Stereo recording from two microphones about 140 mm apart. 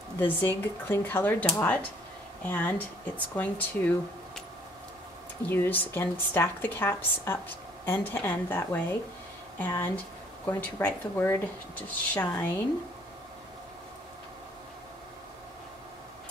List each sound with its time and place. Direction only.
0.2 s speech: 15° left (ahead or behind)
5.5 s speech: 15° left (ahead or behind)